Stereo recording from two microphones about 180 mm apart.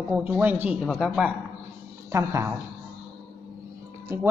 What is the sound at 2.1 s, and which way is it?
Speech, 15° right (ahead or behind).